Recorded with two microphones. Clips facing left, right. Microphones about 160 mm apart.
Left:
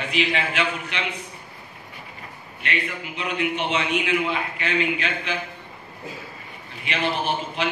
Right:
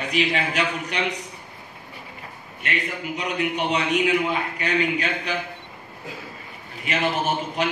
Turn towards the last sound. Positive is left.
turn(degrees=-45)  # may be behind; listen again after turning